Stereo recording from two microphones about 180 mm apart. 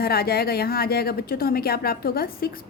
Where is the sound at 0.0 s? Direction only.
60° left (ahead or behind).